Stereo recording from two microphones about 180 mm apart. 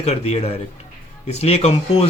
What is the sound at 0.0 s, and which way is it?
Speech, 35° left (ahead or behind).